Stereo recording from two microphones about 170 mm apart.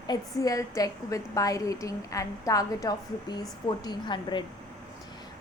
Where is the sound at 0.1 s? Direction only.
20° left (ahead or behind).